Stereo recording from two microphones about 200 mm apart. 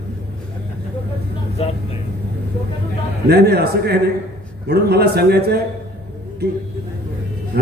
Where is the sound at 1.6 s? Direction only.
30° left (ahead or behind).